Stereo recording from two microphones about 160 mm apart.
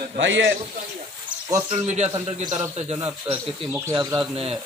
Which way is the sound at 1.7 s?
45° right (ahead or behind).